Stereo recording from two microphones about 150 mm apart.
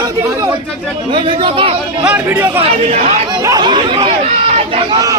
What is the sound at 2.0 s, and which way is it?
Speech, 10° right (ahead or behind).